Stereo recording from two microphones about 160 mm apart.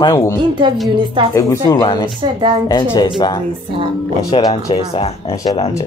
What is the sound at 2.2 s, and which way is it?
Speech, 30° right (ahead or behind).